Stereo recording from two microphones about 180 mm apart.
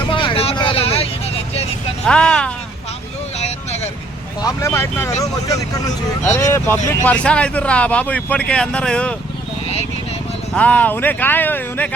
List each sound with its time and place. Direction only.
0.1 s vehicle: 30° left (ahead or behind)
2.0 s speech: 5° left (ahead or behind)
3.3 s vehicle: 35° left (ahead or behind)
4.4 s speech: 15° left (ahead or behind)
6.3 s speech: 10° left (ahead or behind)
10.5 s speech: 10° left (ahead or behind)